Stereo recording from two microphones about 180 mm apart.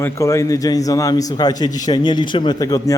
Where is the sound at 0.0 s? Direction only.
15° left (ahead or behind).